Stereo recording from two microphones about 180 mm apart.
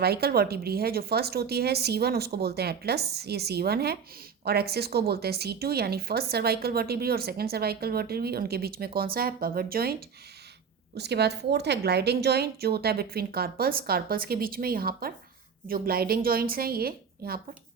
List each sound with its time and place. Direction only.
0.0 s a woman's voice: 60° right (ahead or behind)
10.9 s a woman's voice: 70° right (ahead or behind)